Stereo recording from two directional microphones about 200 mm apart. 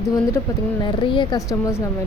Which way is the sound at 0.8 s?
25° left (ahead or behind).